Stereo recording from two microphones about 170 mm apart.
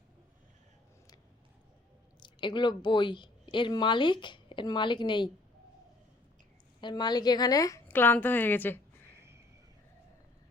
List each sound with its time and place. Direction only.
2.2 s speech: 25° left (ahead or behind)
6.8 s a woman's voice: 25° left (ahead or behind)